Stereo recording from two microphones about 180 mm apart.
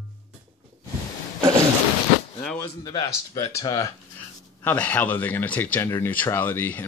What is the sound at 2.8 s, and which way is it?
Speech, 20° left (ahead or behind).